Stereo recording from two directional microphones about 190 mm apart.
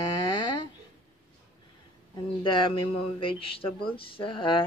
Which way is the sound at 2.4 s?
25° left (ahead or behind).